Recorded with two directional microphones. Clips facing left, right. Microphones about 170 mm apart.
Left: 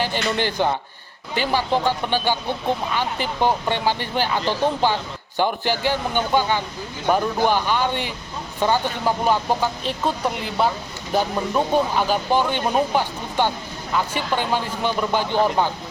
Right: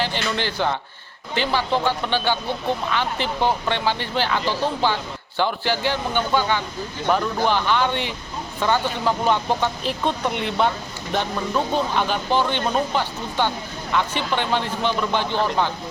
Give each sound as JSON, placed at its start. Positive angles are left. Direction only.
{"t": 0.1, "sound": "speech", "side_deg": 50}
{"t": 0.5, "sound": "speech", "side_deg": 15}